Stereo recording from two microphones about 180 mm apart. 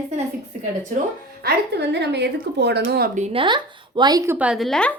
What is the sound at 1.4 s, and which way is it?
A woman's voice, 65° right (ahead or behind).